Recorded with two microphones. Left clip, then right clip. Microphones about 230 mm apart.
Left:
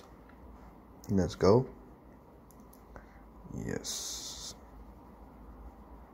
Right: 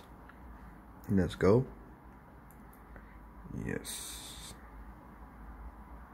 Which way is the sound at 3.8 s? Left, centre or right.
Centre.